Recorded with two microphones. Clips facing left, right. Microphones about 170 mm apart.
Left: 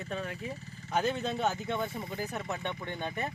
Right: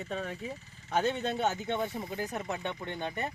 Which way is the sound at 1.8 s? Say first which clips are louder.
Right 1 dB; centre (ahead or behind).